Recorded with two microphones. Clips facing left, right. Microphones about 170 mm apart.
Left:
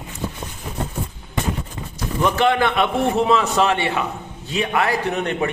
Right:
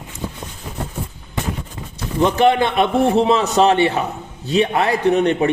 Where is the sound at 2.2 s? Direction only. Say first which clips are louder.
Right 3 dB; 20° right (ahead or behind).